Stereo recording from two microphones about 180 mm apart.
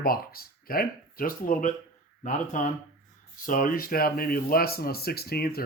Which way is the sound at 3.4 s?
50° left (ahead or behind).